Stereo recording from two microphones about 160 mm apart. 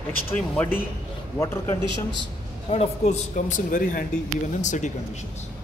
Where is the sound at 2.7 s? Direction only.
45° left (ahead or behind).